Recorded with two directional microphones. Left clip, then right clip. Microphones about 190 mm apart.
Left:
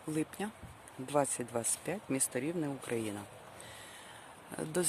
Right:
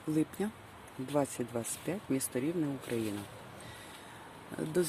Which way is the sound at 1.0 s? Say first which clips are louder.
Left 1 dB; 30° left (ahead or behind).